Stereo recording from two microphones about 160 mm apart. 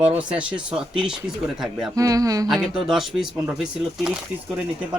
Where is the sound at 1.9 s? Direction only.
20° right (ahead or behind).